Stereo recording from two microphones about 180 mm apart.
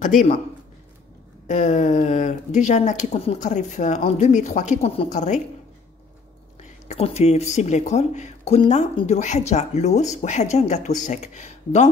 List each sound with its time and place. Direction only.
0.0 s a man's voice: 45° left (ahead or behind)
1.5 s speech: 40° left (ahead or behind)
6.9 s speech: 35° left (ahead or behind)